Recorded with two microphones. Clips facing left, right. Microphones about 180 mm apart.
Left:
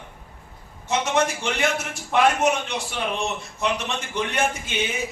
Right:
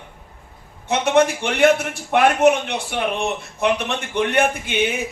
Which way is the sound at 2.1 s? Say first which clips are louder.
Right 5 dB; 60° right (ahead or behind).